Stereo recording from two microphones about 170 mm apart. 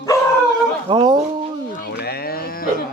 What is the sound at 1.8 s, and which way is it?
Cattle, 70° left (ahead or behind).